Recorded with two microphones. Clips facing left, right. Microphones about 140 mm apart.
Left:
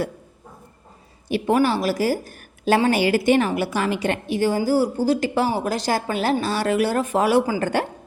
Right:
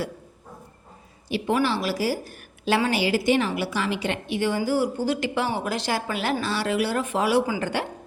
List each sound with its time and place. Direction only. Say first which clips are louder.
1.3 s a woman's voice: left 4 dB; 45° left (ahead or behind)